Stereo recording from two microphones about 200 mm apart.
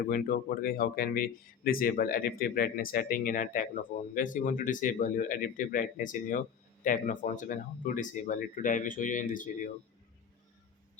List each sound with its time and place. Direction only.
0.0 s speech: 50° left (ahead or behind)